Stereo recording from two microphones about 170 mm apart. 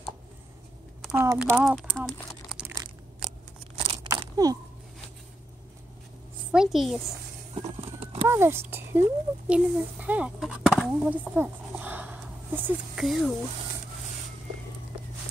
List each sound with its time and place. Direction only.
1.0 s speech: 15° right (ahead or behind)
1.8 s crumpling: 5° left (ahead or behind)
3.7 s a sound: 30° right (ahead or behind)
6.5 s a child's voice: centre (ahead or behind)
7.6 s horse: 30° right (ahead or behind)
8.3 s a child's voice: 15° right (ahead or behind)